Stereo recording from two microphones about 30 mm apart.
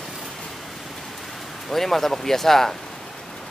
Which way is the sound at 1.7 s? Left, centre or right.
Centre.